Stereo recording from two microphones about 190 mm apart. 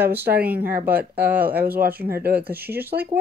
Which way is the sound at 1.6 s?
55° right (ahead or behind).